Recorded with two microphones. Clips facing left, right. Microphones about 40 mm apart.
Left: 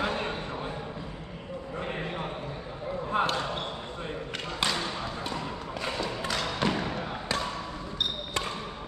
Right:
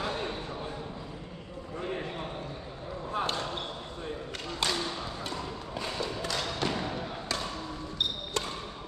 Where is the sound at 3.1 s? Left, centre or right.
Left.